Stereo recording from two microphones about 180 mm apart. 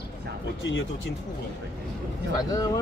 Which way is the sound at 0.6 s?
90° left.